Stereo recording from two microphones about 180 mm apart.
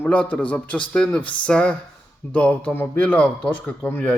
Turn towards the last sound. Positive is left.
turn(degrees=10)  # may be behind; listen again after turning